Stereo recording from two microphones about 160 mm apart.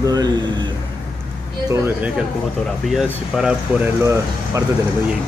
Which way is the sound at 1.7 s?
15° right (ahead or behind).